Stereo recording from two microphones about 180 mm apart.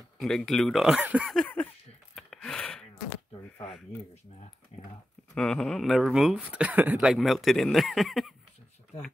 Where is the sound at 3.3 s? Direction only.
35° left (ahead or behind).